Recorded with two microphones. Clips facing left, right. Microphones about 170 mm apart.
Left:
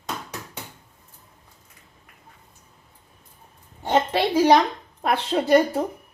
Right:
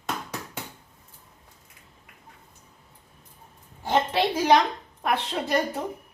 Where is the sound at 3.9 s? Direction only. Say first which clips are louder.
Left 3 dB; 35° left (ahead or behind).